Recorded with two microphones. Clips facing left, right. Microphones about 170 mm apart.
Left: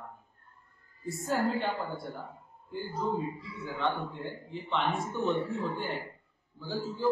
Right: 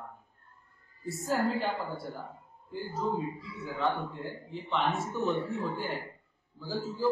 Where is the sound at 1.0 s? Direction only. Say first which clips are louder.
Even; centre (ahead or behind).